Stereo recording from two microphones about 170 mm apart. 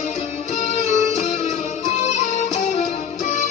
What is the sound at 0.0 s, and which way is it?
Music, 40° left (ahead or behind).